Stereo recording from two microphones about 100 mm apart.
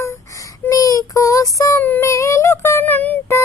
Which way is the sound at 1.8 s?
15° left (ahead or behind).